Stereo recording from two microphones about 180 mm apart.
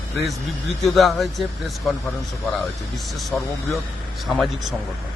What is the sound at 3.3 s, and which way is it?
Speech, 5° left (ahead or behind).